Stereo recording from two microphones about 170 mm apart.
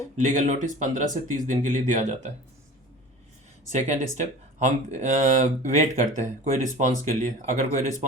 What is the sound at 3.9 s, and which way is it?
Speech, 45° right (ahead or behind).